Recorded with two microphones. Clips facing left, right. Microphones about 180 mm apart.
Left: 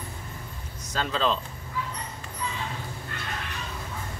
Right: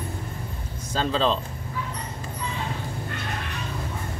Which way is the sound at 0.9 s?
30° right (ahead or behind).